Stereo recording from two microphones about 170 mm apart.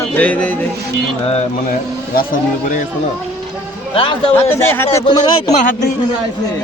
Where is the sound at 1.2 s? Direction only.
40° left (ahead or behind).